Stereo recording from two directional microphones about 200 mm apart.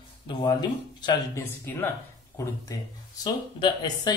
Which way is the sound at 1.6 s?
10° left (ahead or behind).